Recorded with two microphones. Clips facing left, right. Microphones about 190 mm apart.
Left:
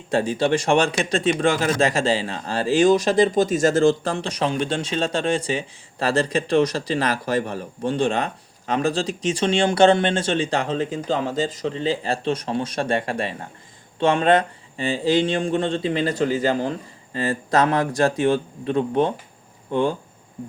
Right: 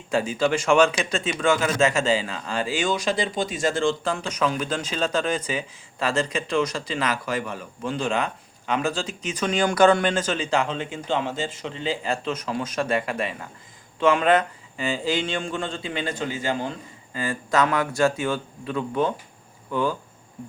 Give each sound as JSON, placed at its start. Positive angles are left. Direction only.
{"t": 0.1, "sound": "speech", "side_deg": 35}